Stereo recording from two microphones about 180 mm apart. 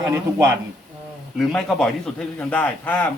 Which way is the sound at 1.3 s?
Centre (ahead or behind).